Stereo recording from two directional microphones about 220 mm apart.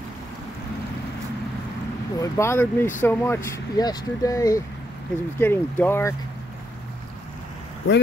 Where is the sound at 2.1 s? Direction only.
15° left (ahead or behind).